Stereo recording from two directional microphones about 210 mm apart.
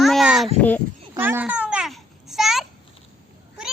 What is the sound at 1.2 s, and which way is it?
Babbling, 10° right (ahead or behind).